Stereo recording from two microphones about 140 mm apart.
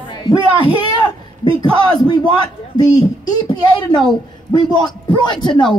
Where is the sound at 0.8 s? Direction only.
35° left (ahead or behind).